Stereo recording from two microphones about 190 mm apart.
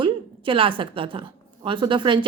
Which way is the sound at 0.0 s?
25° right (ahead or behind).